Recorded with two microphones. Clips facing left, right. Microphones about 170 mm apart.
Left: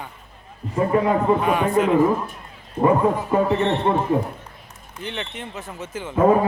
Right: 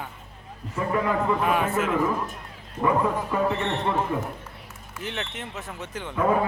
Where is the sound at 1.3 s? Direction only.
5° right (ahead or behind).